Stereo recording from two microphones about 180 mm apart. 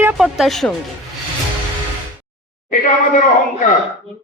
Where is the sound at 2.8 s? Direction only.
50° left (ahead or behind).